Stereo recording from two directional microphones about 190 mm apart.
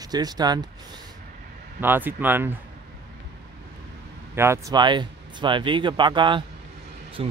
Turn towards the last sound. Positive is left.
turn(degrees=-30)  # may be behind; listen again after turning